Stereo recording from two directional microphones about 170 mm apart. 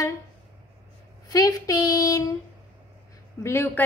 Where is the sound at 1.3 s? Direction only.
20° left (ahead or behind).